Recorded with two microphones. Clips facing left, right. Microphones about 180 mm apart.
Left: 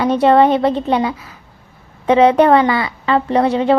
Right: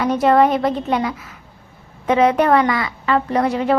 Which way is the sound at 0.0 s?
30° left (ahead or behind).